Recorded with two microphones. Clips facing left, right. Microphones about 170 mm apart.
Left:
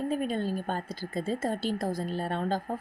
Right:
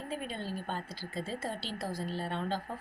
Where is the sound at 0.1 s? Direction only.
50° left (ahead or behind).